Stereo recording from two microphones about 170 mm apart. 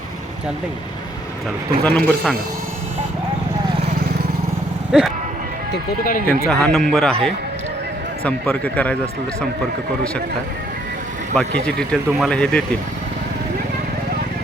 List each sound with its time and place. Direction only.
1.8 s speech: 5° left (ahead or behind)
4.9 s speech: 5° right (ahead or behind)
5.7 s speech: 55° left (ahead or behind)
6.5 s speech: 5° left (ahead or behind)
8.2 s speech: 10° left (ahead or behind)
11.3 s speech: 5° left (ahead or behind)